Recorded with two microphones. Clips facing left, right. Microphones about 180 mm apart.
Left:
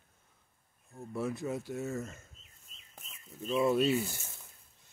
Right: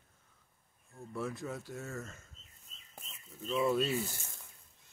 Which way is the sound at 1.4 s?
15° left (ahead or behind).